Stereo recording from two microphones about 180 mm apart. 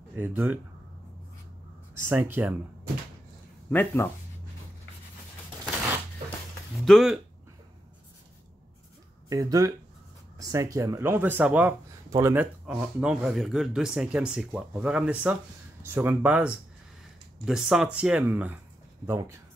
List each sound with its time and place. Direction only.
0.1 s speech: 10° right (ahead or behind)
2.0 s speech: 10° right (ahead or behind)
3.7 s speech: 15° left (ahead or behind)
6.8 s speech: centre (ahead or behind)
9.3 s speech: 20° right (ahead or behind)